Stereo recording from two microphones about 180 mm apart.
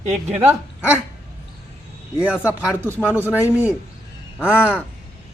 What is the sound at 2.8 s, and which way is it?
Speech, 10° left (ahead or behind).